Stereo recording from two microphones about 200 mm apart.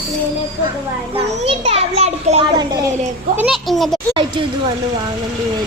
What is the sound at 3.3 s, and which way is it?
Speech, 5° right (ahead or behind).